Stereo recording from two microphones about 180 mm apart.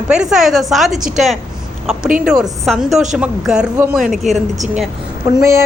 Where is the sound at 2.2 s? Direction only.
5° right (ahead or behind).